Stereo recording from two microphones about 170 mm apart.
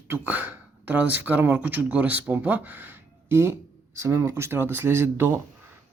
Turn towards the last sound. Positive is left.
turn(degrees=-15)  # may be behind; listen again after turning